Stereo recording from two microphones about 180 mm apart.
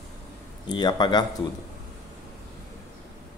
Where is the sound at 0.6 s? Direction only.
25° left (ahead or behind).